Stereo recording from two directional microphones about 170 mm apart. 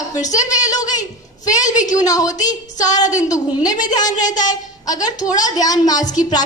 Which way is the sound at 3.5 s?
20° left (ahead or behind).